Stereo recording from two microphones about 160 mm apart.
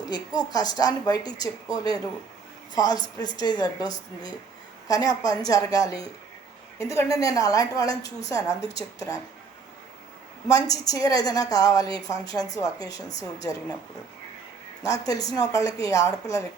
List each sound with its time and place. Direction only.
0.1 s speech: 25° left (ahead or behind)
10.5 s speech: 20° left (ahead or behind)
14.8 s speech: 20° left (ahead or behind)